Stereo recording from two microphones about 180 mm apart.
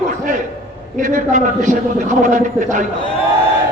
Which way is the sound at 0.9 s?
45° right (ahead or behind).